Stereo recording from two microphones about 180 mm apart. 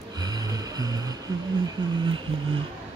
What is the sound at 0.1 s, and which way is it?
Music, 20° right (ahead or behind).